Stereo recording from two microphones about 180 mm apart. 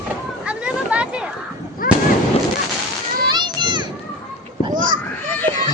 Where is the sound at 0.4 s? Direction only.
5° right (ahead or behind).